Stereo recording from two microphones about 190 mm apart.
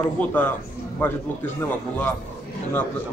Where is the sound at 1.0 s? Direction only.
10° left (ahead or behind).